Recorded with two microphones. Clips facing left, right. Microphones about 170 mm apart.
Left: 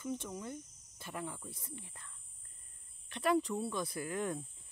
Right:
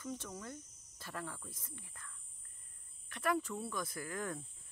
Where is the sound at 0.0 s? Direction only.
20° left (ahead or behind).